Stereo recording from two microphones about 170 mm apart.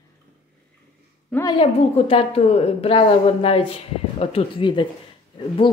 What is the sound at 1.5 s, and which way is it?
A woman's voice, 35° left (ahead or behind).